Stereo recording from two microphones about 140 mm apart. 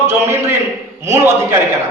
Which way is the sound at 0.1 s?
15° right (ahead or behind).